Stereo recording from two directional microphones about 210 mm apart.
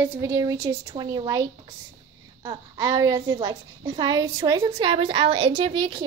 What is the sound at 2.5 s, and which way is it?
A child's voice, 15° right (ahead or behind).